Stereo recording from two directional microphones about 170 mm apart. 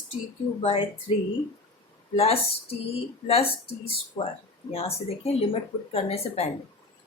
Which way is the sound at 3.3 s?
35° left (ahead or behind).